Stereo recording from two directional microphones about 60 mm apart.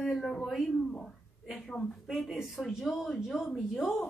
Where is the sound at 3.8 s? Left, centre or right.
Left.